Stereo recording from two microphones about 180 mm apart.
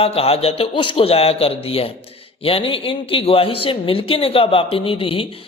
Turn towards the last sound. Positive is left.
turn(degrees=30)  # may be behind; listen again after turning